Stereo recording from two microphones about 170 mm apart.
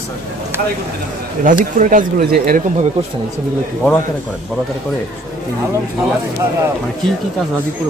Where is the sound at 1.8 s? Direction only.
50° right (ahead or behind).